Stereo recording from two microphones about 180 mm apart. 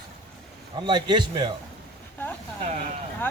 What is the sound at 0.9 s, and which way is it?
Speech, 25° right (ahead or behind).